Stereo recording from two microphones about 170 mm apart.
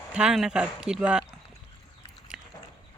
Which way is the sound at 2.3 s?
5° right (ahead or behind).